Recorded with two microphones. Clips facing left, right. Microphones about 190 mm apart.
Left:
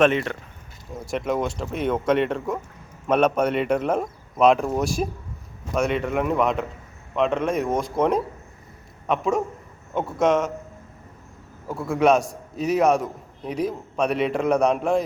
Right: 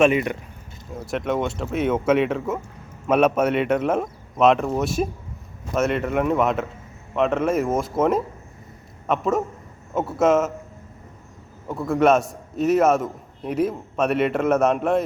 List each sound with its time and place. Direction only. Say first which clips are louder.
0.0 s speech: right 1 dB; 10° right (ahead or behind)
0.9 s a man's voice: right 1 dB; centre (ahead or behind)
11.7 s a man's voice: right 1 dB; centre (ahead or behind)